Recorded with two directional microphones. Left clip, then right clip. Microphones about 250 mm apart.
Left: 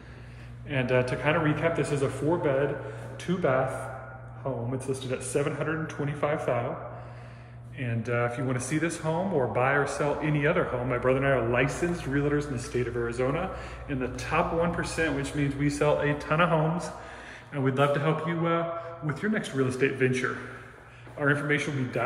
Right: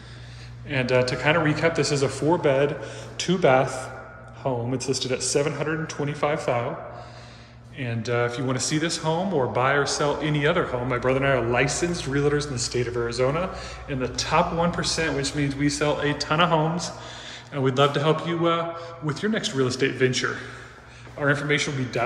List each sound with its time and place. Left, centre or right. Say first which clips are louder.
0.7 s a man's voice: right 4 dB; centre
7.8 s a man's voice: right 4 dB; centre